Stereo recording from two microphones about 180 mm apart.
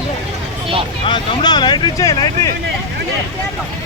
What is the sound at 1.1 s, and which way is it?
Vehicle, 25° left (ahead or behind).